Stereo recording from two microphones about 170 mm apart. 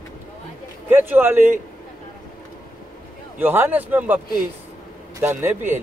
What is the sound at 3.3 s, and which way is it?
Speech, 10° right (ahead or behind).